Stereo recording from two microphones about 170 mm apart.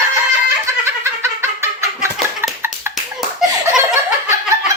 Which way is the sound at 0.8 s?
15° right (ahead or behind).